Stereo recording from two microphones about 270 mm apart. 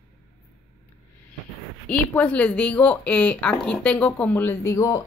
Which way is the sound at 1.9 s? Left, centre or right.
Centre.